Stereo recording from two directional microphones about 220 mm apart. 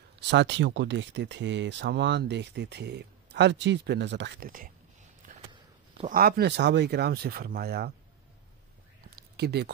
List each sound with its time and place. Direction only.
0.3 s speech: 55° right (ahead or behind)
5.5 s a sound: 20° right (ahead or behind)
6.1 s speech: 45° right (ahead or behind)
9.4 s speech: 50° right (ahead or behind)